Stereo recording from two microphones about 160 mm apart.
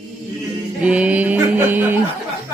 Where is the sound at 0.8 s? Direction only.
10° right (ahead or behind).